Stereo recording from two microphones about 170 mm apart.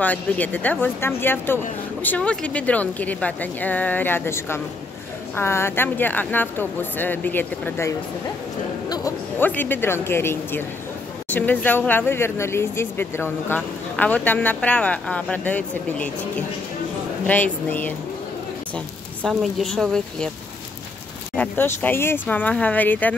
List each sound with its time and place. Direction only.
0.0 s speech: 10° left (ahead or behind)
8.8 s a sound: 25° left (ahead or behind)
9.4 s speech: 10° left (ahead or behind)
19.2 s a woman's voice: centre (ahead or behind)
21.4 s speech: 10° left (ahead or behind)